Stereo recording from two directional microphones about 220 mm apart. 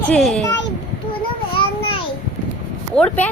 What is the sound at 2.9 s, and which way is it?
Speech, 5° left (ahead or behind).